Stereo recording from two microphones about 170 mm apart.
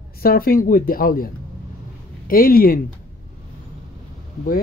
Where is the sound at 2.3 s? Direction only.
55° left (ahead or behind).